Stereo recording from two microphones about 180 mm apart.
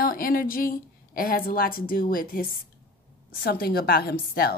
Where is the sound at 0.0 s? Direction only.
50° left (ahead or behind).